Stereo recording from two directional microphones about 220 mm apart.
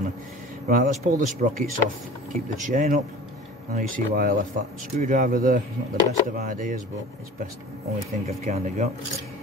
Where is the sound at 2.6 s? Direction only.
35° right (ahead or behind).